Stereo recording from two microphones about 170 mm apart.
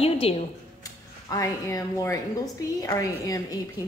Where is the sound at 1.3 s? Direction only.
20° left (ahead or behind).